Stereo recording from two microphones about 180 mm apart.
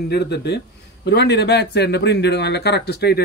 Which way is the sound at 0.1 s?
65° left (ahead or behind).